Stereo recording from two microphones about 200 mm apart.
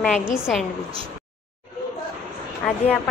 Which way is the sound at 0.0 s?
Centre (ahead or behind).